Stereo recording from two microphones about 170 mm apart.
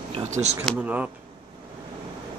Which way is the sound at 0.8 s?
10° right (ahead or behind).